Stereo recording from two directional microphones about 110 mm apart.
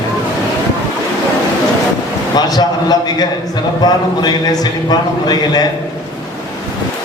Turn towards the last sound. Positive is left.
turn(degrees=40)  # may be behind; listen again after turning